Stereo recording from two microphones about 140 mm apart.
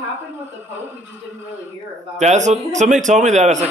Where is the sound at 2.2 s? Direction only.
55° right (ahead or behind).